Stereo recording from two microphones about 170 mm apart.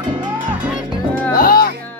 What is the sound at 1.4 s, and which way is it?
Music, 60° left (ahead or behind).